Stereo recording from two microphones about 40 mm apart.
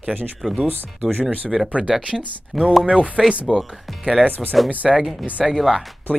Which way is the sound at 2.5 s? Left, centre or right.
Centre.